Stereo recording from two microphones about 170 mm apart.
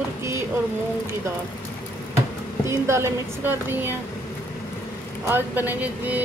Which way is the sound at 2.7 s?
15° right (ahead or behind).